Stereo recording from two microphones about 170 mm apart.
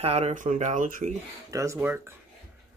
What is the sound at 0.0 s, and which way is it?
Speech, 35° right (ahead or behind).